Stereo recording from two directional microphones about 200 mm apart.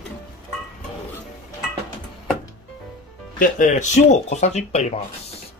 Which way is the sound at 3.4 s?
40° left (ahead or behind).